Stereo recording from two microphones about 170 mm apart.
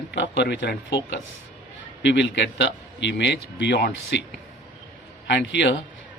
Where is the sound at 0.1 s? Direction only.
85° left.